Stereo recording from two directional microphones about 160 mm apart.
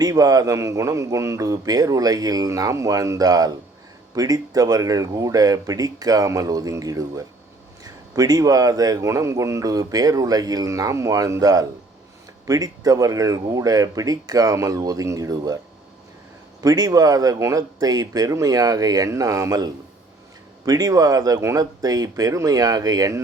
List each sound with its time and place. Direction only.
0.0 s a man's voice: 25° right (ahead or behind)
16.6 s a man's voice: 25° right (ahead or behind)